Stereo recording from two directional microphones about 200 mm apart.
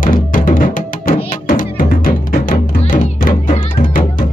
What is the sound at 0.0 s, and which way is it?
Music, 45° left (ahead or behind).